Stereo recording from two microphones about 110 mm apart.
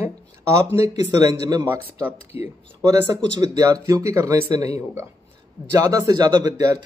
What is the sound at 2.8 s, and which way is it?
Speech, 30° right (ahead or behind).